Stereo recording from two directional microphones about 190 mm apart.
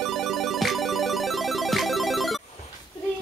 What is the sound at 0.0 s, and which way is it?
Music, centre (ahead or behind).